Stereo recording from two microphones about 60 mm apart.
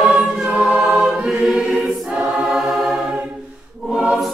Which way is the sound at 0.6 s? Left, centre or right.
Centre.